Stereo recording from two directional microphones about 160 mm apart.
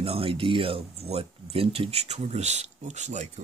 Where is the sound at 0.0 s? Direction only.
35° right (ahead or behind).